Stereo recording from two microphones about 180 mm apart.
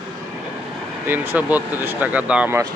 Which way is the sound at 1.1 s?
10° right (ahead or behind).